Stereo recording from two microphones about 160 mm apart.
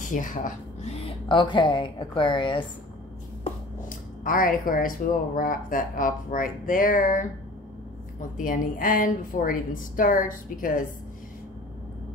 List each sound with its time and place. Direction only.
0.0 s speech: 55° left (ahead or behind)
0.9 s a woman's voice: 30° left (ahead or behind)
4.2 s speech: 60° left (ahead or behind)